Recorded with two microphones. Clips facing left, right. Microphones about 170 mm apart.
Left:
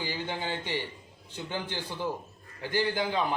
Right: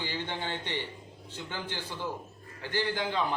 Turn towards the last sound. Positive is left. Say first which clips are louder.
# left 2 dB
turn(degrees=10)  # may be behind; listen again after turning